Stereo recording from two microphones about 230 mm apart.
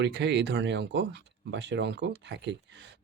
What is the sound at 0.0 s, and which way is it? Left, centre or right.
Speech, right.